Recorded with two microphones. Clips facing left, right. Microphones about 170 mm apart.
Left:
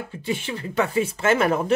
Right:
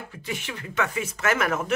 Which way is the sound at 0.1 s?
30° left (ahead or behind).